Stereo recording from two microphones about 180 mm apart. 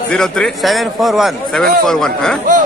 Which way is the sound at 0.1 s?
5° left (ahead or behind).